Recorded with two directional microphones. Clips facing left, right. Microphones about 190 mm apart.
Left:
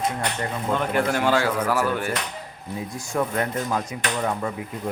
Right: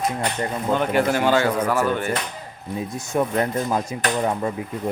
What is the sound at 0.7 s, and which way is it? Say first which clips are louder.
Speech: right 3 dB; centre (ahead or behind).